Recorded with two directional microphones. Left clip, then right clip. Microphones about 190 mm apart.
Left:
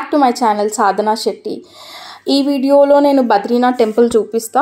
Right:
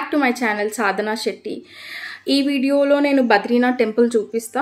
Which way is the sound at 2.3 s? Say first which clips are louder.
Left 6 dB; 10° left (ahead or behind).